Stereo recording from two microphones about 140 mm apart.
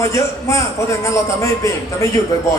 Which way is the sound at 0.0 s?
20° left (ahead or behind).